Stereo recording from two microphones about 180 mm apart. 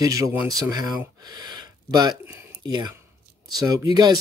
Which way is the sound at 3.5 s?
20° right (ahead or behind).